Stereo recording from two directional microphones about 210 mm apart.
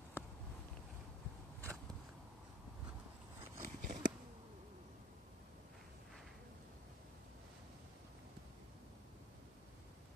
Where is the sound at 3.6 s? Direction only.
40° right (ahead or behind).